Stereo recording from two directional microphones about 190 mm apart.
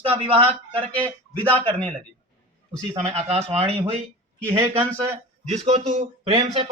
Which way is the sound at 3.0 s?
35° right (ahead or behind).